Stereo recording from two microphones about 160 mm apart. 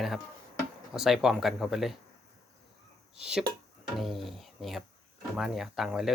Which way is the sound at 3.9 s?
Centre (ahead or behind).